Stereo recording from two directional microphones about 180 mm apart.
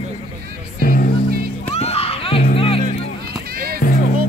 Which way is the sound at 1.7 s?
35° left (ahead or behind).